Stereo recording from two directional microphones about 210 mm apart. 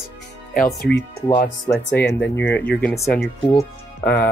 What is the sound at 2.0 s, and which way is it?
Speech, 55° left (ahead or behind).